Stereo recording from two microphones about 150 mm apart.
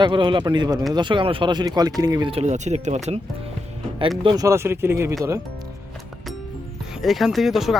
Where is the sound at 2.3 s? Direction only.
45° right (ahead or behind).